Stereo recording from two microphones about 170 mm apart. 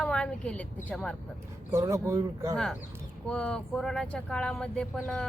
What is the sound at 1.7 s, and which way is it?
Speech, 15° right (ahead or behind).